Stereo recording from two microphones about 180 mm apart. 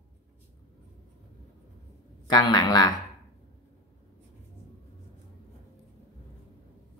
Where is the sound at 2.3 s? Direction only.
20° left (ahead or behind).